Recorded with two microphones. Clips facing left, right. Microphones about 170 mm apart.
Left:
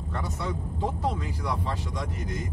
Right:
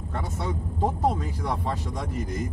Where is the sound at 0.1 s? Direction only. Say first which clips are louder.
Right 1 dB; 50° right (ahead or behind).